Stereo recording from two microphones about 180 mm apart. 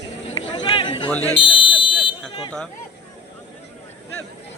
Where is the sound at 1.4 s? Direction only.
30° left (ahead or behind).